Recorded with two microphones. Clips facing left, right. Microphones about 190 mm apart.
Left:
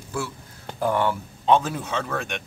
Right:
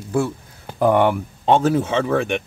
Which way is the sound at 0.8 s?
65° right (ahead or behind).